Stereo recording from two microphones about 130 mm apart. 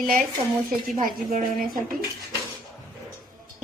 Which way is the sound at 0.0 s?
90° right.